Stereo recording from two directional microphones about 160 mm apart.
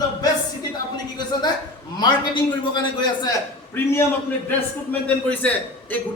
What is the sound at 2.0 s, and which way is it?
A man's voice, 25° left (ahead or behind).